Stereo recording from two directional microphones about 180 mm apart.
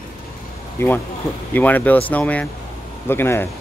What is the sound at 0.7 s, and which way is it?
A man's voice, 15° left (ahead or behind).